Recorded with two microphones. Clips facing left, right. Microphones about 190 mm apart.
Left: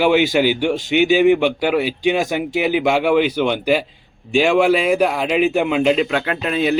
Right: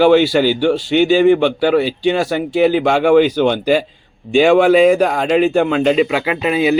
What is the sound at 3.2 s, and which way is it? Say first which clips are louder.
Speech: right 4 dB; 35° right (ahead or behind).